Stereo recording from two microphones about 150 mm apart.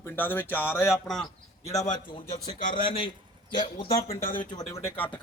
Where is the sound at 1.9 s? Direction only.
30° left (ahead or behind).